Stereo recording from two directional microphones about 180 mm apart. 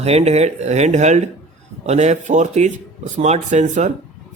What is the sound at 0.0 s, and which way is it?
A man's voice, 35° right (ahead or behind).